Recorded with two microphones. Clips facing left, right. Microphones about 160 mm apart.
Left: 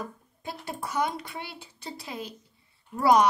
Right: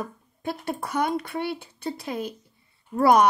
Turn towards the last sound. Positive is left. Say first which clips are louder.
# right 3 dB
turn(degrees=-55)  # may be behind; listen again after turning